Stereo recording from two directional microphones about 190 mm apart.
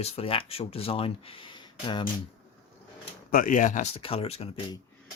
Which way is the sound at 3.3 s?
45° left (ahead or behind).